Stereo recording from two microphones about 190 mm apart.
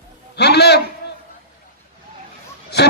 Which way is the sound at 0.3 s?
60° left (ahead or behind).